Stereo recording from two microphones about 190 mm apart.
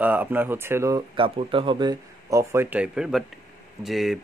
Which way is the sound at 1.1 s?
25° right (ahead or behind).